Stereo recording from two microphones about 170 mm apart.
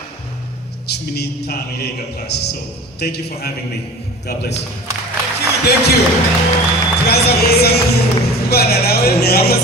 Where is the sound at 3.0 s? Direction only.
70° left (ahead or behind).